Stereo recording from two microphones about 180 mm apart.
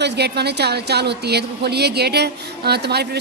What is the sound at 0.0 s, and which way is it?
Speech, 65° right (ahead or behind).